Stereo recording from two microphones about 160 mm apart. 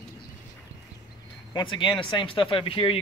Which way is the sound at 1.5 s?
30° left (ahead or behind).